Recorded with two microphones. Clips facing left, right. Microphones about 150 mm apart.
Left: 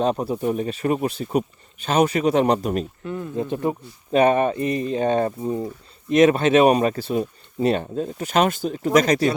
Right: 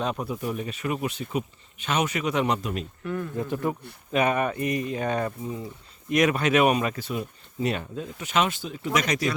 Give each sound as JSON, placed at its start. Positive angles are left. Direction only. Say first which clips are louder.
{"t": 0.0, "sound": "speech", "louder": "left 7 dB", "side_deg": 35}
{"t": 3.0, "sound": "speech", "louder": "left 3 dB", "side_deg": 20}
{"t": 4.1, "sound": "speech", "louder": "left 6 dB", "side_deg": 35}
{"t": 5.4, "sound": "speech", "louder": "left 8 dB", "side_deg": 45}
{"t": 6.1, "sound": "speech", "louder": "left 7 dB", "side_deg": 30}